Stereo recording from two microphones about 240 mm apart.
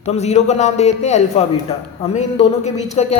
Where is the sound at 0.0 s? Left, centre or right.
Left.